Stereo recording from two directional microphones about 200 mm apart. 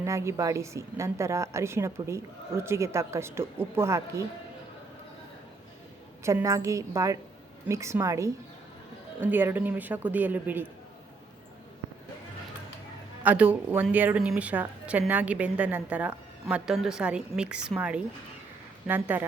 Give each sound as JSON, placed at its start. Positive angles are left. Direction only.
{"t": 0.0, "sound": "a woman's voice", "side_deg": -15}
{"t": 6.2, "sound": "a woman's voice", "side_deg": -15}
{"t": 13.2, "sound": "a woman's voice", "side_deg": -5}